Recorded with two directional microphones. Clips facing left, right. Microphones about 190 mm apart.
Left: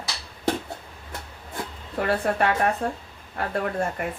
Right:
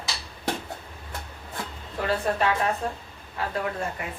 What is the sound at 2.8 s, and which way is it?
Speech, 55° left (ahead or behind).